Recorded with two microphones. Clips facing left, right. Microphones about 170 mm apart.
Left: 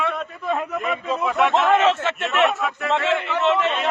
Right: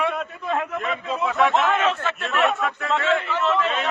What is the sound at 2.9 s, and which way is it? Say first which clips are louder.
Speech: even; 30° left (ahead or behind).